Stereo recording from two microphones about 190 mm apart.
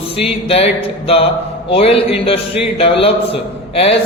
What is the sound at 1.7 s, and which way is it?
A man's voice, 30° left (ahead or behind).